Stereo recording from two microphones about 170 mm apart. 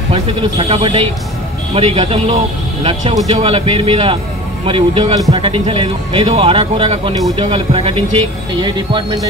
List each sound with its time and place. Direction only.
0.1 s speech: 35° right (ahead or behind)